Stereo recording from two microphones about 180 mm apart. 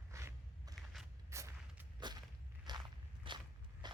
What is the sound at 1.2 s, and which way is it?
Artillery fire, 15° right (ahead or behind).